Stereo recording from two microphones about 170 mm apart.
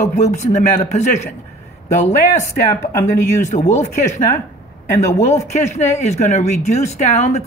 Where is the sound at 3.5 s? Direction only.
45° left (ahead or behind).